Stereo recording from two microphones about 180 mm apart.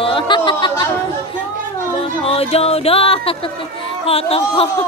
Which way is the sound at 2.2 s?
35° left (ahead or behind).